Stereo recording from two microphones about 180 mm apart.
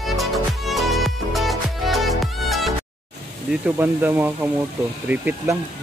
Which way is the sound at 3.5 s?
10° right (ahead or behind).